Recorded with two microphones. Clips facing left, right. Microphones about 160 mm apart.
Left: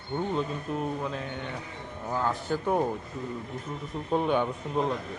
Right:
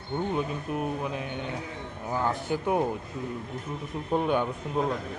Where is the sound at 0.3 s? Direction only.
10° right (ahead or behind).